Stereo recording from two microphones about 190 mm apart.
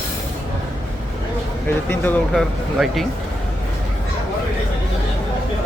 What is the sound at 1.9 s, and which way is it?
Speech, 10° left (ahead or behind).